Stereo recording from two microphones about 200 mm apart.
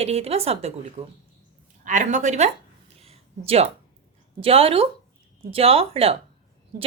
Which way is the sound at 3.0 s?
30° right (ahead or behind).